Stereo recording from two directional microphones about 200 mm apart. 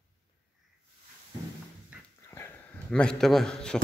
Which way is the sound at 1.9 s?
10° right (ahead or behind).